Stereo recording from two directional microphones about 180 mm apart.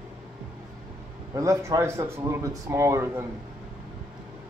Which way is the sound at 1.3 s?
15° right (ahead or behind).